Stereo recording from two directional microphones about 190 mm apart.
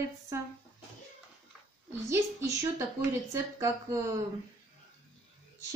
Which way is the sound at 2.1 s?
15° right (ahead or behind).